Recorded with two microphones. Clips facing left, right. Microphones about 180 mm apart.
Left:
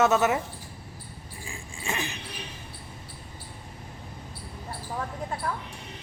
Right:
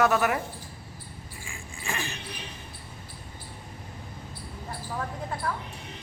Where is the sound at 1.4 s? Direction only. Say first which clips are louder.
Left 3 dB; 30° left (ahead or behind).